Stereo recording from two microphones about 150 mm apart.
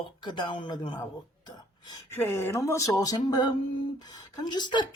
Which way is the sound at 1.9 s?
15° left (ahead or behind).